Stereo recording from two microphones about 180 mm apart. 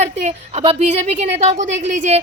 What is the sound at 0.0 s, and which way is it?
A woman's voice, 40° right (ahead or behind).